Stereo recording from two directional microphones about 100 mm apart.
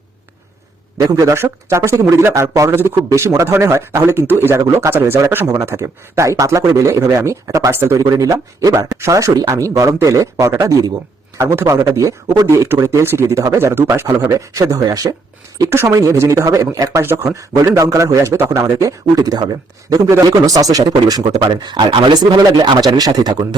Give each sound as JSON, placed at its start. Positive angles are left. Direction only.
{"t": 0.9, "sound": "speech", "side_deg": -40}
{"t": 15.7, "sound": "speech", "side_deg": -25}
{"t": 18.6, "sound": "speech", "side_deg": -35}
{"t": 21.4, "sound": "speech", "side_deg": -50}